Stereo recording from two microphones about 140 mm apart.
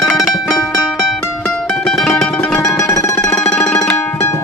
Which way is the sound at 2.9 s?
20° left (ahead or behind).